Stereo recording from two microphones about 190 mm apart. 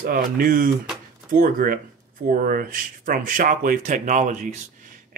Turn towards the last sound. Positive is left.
turn(degrees=-40)  # may be behind; listen again after turning